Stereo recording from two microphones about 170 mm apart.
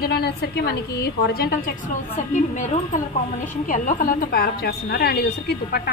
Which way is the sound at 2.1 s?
45° left (ahead or behind).